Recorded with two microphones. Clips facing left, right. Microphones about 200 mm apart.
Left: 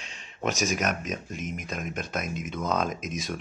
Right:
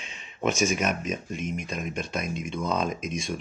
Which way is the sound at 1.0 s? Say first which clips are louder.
Right 3 dB; centre (ahead or behind).